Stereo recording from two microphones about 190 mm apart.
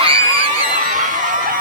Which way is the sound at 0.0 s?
30° right (ahead or behind).